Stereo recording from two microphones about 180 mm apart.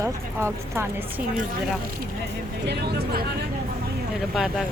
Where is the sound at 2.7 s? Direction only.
65° right (ahead or behind).